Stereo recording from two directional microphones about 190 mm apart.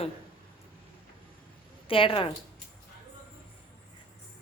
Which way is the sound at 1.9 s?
30° left (ahead or behind).